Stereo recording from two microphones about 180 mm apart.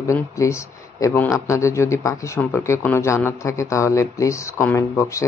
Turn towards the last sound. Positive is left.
turn(degrees=15)  # may be behind; listen again after turning